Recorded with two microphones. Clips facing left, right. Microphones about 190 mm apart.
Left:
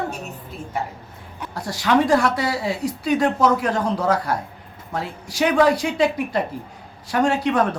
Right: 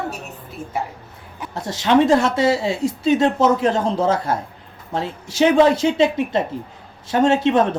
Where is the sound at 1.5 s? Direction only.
25° right (ahead or behind).